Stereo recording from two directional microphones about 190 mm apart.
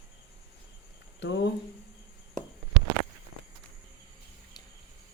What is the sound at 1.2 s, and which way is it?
Speech, 70° left (ahead or behind).